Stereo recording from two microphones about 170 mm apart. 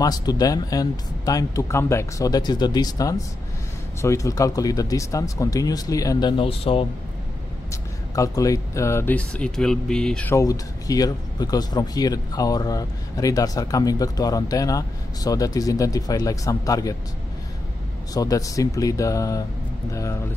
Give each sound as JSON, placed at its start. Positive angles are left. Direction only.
{"t": 0.0, "sound": "speech", "side_deg": 20}
{"t": 7.7, "sound": "speech", "side_deg": 20}
{"t": 10.3, "sound": "speech", "side_deg": 20}
{"t": 18.1, "sound": "speech", "side_deg": 20}